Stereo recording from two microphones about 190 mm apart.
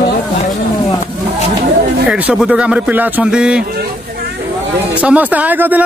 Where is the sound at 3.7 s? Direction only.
50° right (ahead or behind).